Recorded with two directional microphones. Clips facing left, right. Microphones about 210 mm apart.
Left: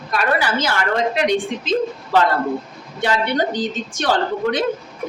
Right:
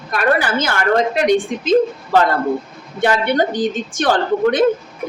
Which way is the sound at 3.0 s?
50° right (ahead or behind).